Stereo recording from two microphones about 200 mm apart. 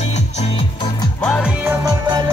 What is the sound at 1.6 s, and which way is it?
Music, 20° right (ahead or behind).